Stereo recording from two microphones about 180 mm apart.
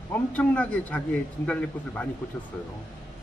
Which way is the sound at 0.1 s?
10° left (ahead or behind).